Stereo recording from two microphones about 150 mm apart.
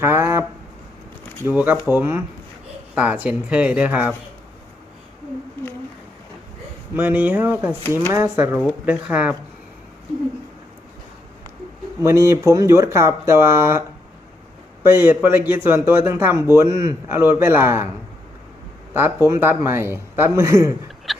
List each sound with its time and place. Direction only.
0.0 s a sound: 15° right (ahead or behind)
1.5 s a man's voice: 10° right (ahead or behind)
6.9 s a man's voice: 10° right (ahead or behind)
12.0 s speech: 20° right (ahead or behind)
14.8 s a man's voice: 15° right (ahead or behind)
18.9 s a man's voice: 15° right (ahead or behind)
21.1 s a sound: centre (ahead or behind)